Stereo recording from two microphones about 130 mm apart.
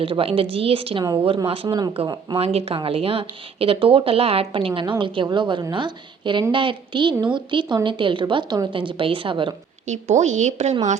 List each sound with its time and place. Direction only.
0.0 s speech: 45° right (ahead or behind)
1.6 s a woman's voice: 30° right (ahead or behind)
2.0 s a woman's voice: 45° right (ahead or behind)
9.8 s a woman's voice: 65° right (ahead or behind)